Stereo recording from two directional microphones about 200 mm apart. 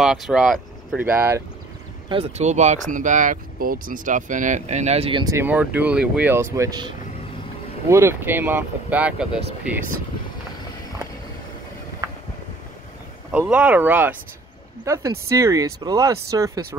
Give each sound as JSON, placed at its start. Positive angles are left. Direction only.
{"t": 0.0, "sound": "speech", "side_deg": 0}
{"t": 2.0, "sound": "speech", "side_deg": -30}
{"t": 5.2, "sound": "speech", "side_deg": -15}
{"t": 7.9, "sound": "speech", "side_deg": -10}
{"t": 12.0, "sound": "a sound", "side_deg": -15}
{"t": 13.3, "sound": "speech", "side_deg": -5}